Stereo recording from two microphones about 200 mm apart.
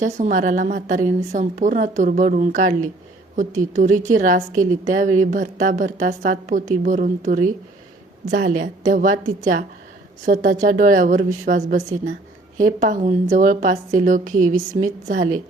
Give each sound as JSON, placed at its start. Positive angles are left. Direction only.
{"t": 0.0, "sound": "a woman's voice", "side_deg": -40}